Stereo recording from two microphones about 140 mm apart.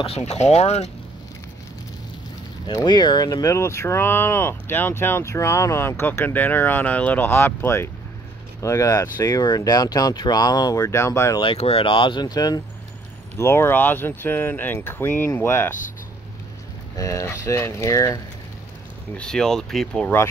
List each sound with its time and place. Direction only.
0.0 s speech: 50° left (ahead or behind)
2.6 s speech: 30° left (ahead or behind)
11.4 s speech: 45° left (ahead or behind); by 12.6 s 30° left (ahead or behind)
13.4 s speech: 15° left (ahead or behind)
16.9 s speech: 25° left (ahead or behind)
19.1 s speech: 5° left (ahead or behind)